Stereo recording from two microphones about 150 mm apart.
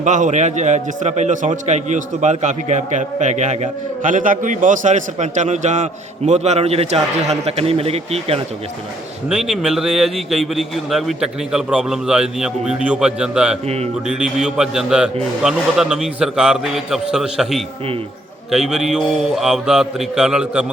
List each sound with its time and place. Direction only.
0.0 s a man's voice: 55° right (ahead or behind)
9.3 s a man's voice: 5° right (ahead or behind)